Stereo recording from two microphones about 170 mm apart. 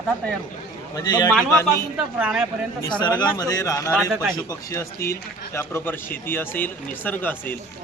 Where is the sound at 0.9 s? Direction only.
25° left (ahead or behind).